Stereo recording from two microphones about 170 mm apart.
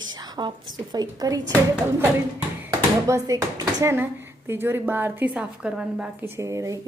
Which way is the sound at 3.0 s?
20° right (ahead or behind).